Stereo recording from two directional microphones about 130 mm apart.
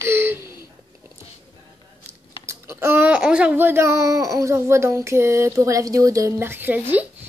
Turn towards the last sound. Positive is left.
turn(degrees=-15)  # may be behind; listen again after turning